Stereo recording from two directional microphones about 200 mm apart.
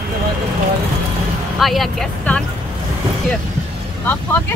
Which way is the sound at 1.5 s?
Centre (ahead or behind).